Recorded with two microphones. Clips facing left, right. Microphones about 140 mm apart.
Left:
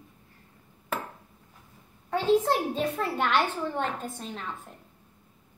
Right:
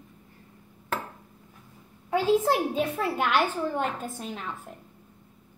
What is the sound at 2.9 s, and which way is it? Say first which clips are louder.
A woman's voice: even; 5° right (ahead or behind).